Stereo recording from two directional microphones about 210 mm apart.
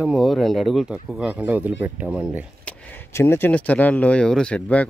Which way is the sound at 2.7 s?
10° left (ahead or behind).